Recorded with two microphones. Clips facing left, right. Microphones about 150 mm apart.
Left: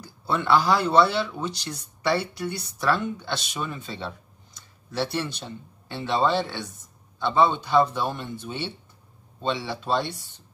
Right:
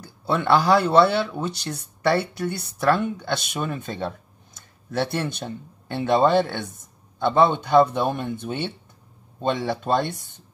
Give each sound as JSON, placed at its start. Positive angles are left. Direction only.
{"t": 0.2, "sound": "speech", "side_deg": -60}